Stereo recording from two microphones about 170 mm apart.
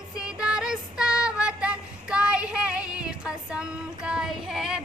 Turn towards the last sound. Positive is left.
turn(degrees=-5)  # may be behind; listen again after turning